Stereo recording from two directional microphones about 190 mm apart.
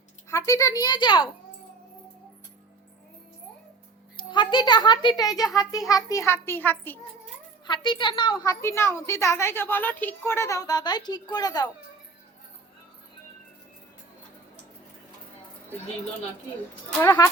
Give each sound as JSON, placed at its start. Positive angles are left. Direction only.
{"t": 0.3, "sound": "a child's voice", "side_deg": 15}
{"t": 4.2, "sound": "a child's voice", "side_deg": 25}
{"t": 7.7, "sound": "a child's voice", "side_deg": 25}
{"t": 8.6, "sound": "a woman's voice", "side_deg": 15}
{"t": 17.0, "sound": "a woman's voice", "side_deg": 20}